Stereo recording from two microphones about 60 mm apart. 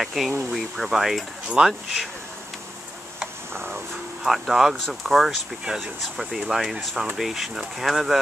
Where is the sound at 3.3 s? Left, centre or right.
Right.